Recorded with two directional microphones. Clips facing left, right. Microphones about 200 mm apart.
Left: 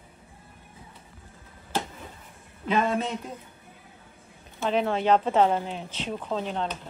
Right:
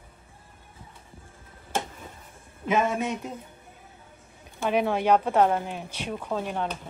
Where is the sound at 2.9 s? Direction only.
15° right (ahead or behind).